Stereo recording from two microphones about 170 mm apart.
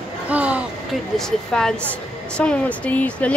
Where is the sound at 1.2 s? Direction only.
5° left (ahead or behind).